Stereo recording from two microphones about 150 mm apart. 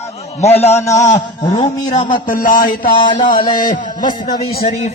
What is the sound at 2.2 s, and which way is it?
Speech, 65° left (ahead or behind).